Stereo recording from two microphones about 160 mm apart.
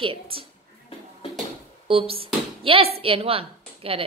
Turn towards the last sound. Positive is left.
turn(degrees=-35)  # may be behind; listen again after turning